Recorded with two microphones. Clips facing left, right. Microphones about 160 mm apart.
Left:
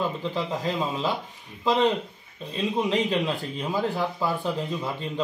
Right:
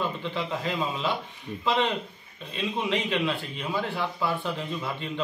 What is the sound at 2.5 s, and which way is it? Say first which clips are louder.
Speech: left 3 dB; 40° left (ahead or behind).